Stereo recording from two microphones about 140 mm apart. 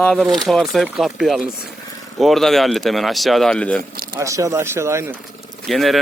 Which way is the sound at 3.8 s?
90° right.